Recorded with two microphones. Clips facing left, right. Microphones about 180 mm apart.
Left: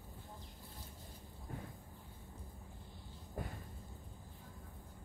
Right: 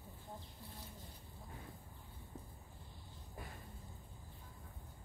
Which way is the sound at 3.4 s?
50° left (ahead or behind).